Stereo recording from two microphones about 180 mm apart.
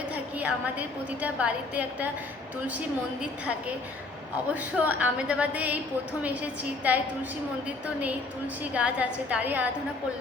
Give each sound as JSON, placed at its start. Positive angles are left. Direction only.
{"t": 0.3, "sound": "a woman's voice", "side_deg": -10}
{"t": 4.5, "sound": "a woman's voice", "side_deg": -10}
{"t": 8.7, "sound": "a woman's voice", "side_deg": -5}